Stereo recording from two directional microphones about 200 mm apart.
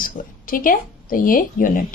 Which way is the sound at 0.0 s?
45° left (ahead or behind).